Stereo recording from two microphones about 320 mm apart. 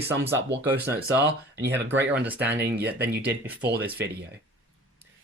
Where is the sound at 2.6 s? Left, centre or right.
Right.